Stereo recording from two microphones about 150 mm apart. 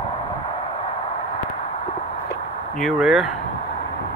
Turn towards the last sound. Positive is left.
turn(degrees=0)  # may be behind; listen again after turning